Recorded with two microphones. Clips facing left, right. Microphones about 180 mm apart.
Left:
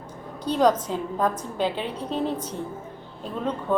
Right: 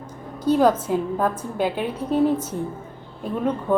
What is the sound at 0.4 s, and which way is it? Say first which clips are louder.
A woman's voice: right 3 dB; 10° right (ahead or behind).